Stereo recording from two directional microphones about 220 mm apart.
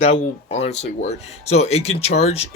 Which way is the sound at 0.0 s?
30° left (ahead or behind).